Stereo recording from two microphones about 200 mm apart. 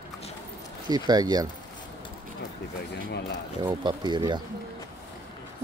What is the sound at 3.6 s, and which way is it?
Speech, 20° right (ahead or behind).